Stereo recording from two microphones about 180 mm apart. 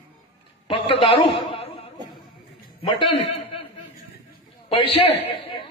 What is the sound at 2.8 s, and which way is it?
Speech, 30° left (ahead or behind).